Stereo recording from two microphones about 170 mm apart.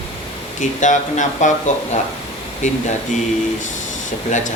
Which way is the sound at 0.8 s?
45° left (ahead or behind).